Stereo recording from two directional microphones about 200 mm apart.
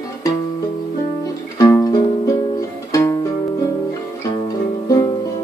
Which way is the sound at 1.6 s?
20° left (ahead or behind).